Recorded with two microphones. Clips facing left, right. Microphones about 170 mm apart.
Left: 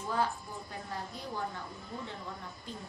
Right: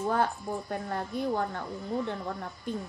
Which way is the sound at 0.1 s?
55° right (ahead or behind).